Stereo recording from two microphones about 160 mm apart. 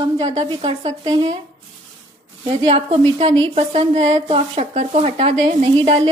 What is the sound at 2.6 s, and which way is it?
A woman's voice, 35° right (ahead or behind).